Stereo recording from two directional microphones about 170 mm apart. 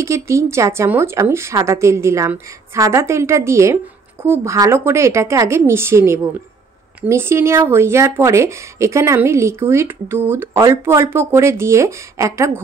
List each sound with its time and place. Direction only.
0.0 s speech: 15° right (ahead or behind)